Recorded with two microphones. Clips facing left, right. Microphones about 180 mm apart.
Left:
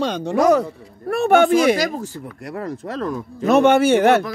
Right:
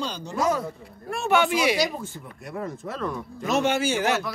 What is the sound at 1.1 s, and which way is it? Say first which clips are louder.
Speech: left 8 dB; 55° left (ahead or behind).